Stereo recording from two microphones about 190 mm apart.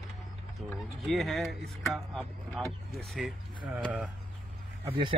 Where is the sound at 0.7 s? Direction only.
Centre (ahead or behind).